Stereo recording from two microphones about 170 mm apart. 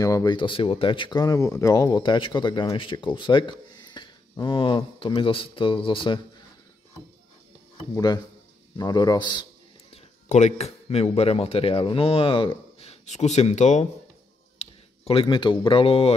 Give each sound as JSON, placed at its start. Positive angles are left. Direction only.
{"t": 0.0, "sound": "speech", "side_deg": 20}
{"t": 7.9, "sound": "speech", "side_deg": 25}
{"t": 10.2, "sound": "a man's voice", "side_deg": 45}